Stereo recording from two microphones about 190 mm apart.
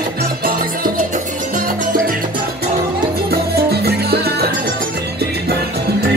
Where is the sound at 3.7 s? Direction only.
55° right (ahead or behind).